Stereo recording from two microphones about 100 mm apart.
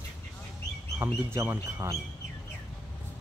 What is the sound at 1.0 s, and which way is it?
Speech, 25° right (ahead or behind).